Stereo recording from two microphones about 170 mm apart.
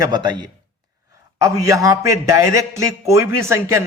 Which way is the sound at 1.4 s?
20° right (ahead or behind).